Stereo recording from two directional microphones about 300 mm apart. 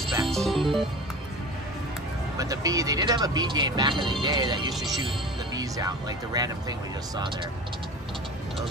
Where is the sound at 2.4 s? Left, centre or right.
Centre.